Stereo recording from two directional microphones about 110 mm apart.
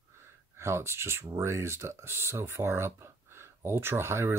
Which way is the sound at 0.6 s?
25° right (ahead or behind).